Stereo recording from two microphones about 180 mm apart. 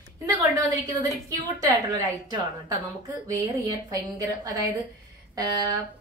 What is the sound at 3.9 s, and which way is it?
A woman's voice, 20° right (ahead or behind).